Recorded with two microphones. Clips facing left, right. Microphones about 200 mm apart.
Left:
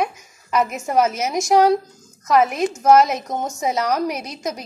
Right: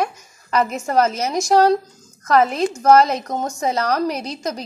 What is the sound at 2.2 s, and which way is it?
A child's voice, 5° left (ahead or behind).